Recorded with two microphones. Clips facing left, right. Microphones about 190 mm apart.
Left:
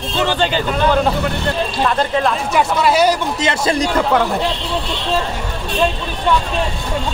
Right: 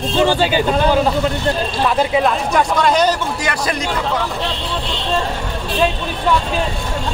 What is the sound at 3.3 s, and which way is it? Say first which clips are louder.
Speech: left 3 dB; 25° left (ahead or behind).